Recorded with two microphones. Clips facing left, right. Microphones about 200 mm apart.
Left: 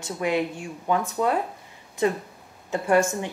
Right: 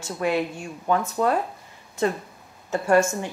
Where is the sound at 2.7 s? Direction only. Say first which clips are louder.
Right 1 dB; 15° left (ahead or behind).